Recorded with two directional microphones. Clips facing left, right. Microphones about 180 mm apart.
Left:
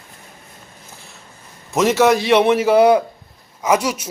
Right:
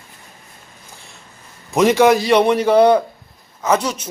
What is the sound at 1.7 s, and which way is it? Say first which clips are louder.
A man's voice: right 2 dB; 5° left (ahead or behind).